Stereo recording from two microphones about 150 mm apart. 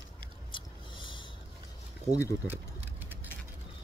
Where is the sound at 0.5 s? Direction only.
35° left (ahead or behind).